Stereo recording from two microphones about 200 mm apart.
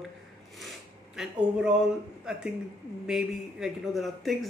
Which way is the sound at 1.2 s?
5° right (ahead or behind).